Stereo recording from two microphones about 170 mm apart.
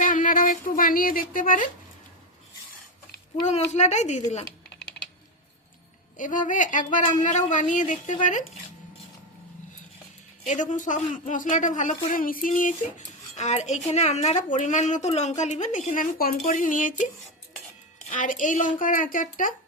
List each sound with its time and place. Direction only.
0.0 s speech: 50° left (ahead or behind)
3.4 s speech: 45° left (ahead or behind)
6.1 s speech: 50° left (ahead or behind)
10.4 s speech: 45° left (ahead or behind)
18.1 s speech: 50° left (ahead or behind)